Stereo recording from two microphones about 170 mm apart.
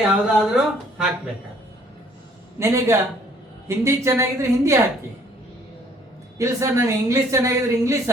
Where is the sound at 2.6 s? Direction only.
15° right (ahead or behind).